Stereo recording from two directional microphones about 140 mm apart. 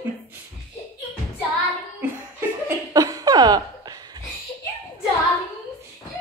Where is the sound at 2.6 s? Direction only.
25° right (ahead or behind).